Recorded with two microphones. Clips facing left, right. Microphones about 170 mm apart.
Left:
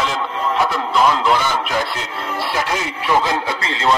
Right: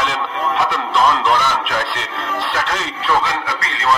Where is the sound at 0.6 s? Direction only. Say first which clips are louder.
Left 1 dB; 5° left (ahead or behind).